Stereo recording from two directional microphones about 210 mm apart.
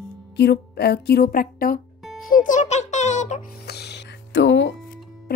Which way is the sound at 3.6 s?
50° left (ahead or behind).